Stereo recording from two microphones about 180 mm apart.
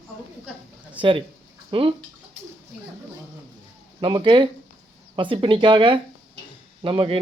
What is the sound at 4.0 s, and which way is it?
Speech, 30° right (ahead or behind).